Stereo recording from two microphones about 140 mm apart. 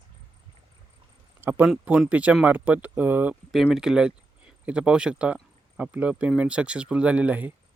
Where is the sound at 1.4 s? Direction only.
15° right (ahead or behind).